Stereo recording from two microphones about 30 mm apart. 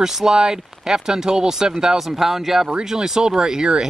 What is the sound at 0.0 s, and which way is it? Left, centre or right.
Speech, centre.